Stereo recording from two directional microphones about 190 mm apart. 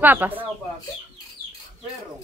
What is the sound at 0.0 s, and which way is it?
Speech, 10° right (ahead or behind).